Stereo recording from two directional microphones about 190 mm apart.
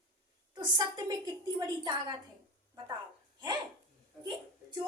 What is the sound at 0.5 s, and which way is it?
A woman's voice, 20° right (ahead or behind).